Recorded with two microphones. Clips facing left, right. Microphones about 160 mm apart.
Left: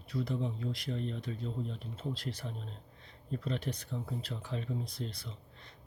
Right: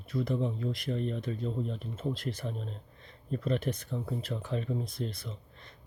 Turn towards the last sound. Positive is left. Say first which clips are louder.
# right 4 dB
turn(degrees=-50)  # may be behind; listen again after turning